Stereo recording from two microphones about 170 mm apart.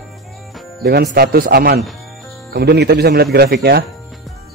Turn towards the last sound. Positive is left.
turn(degrees=-70)  # may be behind; listen again after turning